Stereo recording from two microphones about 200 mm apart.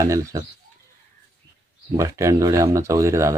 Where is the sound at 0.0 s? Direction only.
15° right (ahead or behind).